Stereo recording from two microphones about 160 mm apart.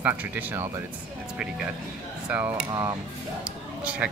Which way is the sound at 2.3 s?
10° right (ahead or behind).